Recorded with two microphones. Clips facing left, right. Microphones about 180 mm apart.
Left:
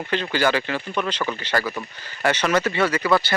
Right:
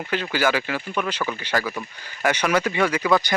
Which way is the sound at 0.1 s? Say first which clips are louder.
Left 1 dB; 10° right (ahead or behind).